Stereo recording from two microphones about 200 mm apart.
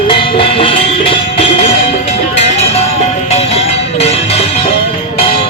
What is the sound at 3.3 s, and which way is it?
Music, 30° left (ahead or behind).